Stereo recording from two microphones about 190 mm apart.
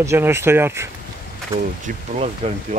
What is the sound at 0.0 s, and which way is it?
Speech, 15° right (ahead or behind).